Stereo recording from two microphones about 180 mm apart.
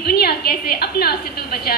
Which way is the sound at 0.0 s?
60° left (ahead or behind).